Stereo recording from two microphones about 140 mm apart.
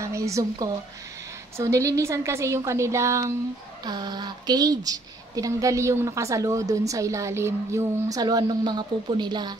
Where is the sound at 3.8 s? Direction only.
30° right (ahead or behind).